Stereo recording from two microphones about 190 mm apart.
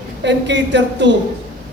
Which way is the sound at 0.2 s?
65° right (ahead or behind).